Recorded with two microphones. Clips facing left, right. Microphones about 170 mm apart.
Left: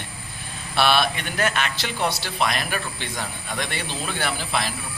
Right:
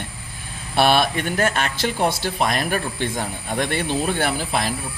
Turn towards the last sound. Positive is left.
turn(degrees=-45)  # may be behind; listen again after turning